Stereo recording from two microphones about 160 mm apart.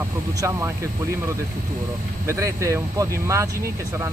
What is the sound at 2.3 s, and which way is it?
Speech, 15° right (ahead or behind).